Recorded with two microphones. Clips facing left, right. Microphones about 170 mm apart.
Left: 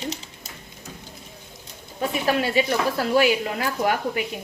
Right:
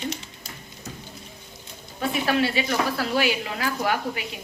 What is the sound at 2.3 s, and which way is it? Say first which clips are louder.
Speech: left 3 dB; 45° left (ahead or behind).